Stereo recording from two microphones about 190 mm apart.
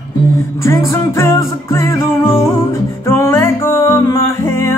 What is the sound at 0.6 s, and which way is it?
Music, 15° left (ahead or behind).